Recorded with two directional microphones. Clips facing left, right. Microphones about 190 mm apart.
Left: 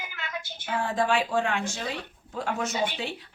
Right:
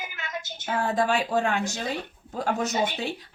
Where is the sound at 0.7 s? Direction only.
40° right (ahead or behind).